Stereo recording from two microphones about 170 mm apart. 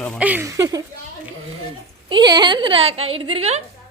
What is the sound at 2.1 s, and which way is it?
A woman's voice, 25° right (ahead or behind).